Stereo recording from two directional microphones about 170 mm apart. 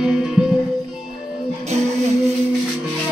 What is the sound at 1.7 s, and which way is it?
Music, 40° right (ahead or behind).